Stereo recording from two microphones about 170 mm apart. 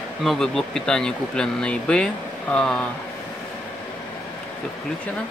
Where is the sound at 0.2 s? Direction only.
Centre (ahead or behind).